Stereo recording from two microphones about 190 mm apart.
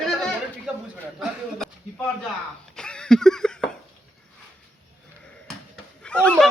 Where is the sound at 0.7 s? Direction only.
5° right (ahead or behind).